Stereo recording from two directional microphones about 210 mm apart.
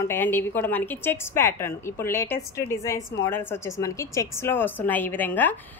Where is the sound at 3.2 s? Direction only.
10° left (ahead or behind).